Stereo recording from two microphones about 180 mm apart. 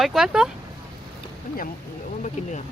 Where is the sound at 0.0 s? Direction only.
Centre (ahead or behind).